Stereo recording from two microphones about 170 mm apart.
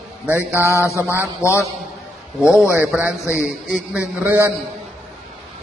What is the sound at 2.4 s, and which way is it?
A man's voice, 5° right (ahead or behind).